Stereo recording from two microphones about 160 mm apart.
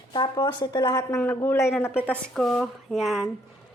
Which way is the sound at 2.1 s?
5° left (ahead or behind).